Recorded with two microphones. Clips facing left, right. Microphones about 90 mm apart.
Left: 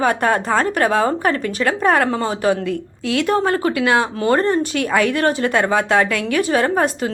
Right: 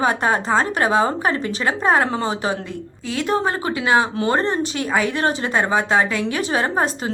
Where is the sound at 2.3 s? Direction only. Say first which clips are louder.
Left 5 dB; 55° left (ahead or behind).